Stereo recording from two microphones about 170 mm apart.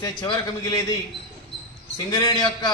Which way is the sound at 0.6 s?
20° left (ahead or behind).